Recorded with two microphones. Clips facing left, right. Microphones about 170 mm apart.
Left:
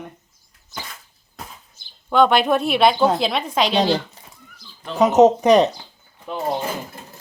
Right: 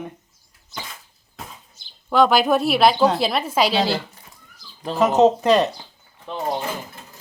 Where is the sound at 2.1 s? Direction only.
Centre (ahead or behind).